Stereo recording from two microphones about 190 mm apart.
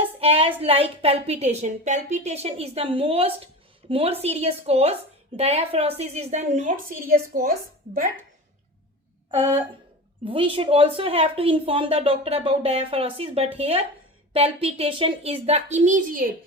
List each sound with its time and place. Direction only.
0.2 s a woman's voice: 30° right (ahead or behind)
10.2 s a woman's voice: 30° right (ahead or behind); by 16.3 s 45° right (ahead or behind)